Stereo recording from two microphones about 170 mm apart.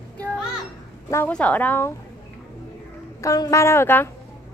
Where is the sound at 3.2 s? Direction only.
20° left (ahead or behind).